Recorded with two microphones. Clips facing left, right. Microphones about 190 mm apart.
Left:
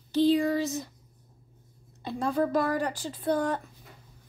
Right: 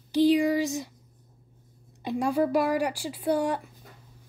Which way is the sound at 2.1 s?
15° right (ahead or behind).